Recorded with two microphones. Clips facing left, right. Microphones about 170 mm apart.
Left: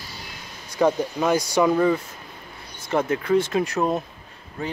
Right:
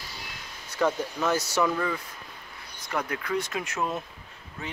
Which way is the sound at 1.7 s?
30° left (ahead or behind).